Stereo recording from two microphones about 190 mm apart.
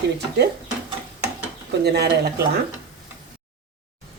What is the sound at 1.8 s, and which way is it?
Speech, 60° right (ahead or behind).